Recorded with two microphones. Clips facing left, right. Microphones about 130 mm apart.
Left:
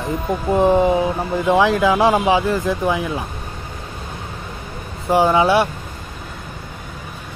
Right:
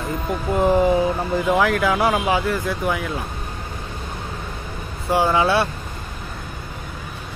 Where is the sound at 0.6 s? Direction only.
20° left (ahead or behind).